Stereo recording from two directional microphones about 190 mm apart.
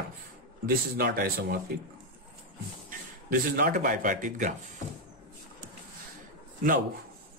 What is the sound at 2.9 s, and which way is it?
Speech, 45° right (ahead or behind).